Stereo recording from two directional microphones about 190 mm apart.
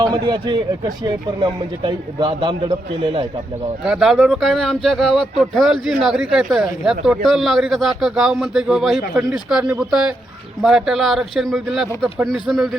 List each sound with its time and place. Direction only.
0.4 s speech: 20° right (ahead or behind)
3.8 s speech: 5° right (ahead or behind)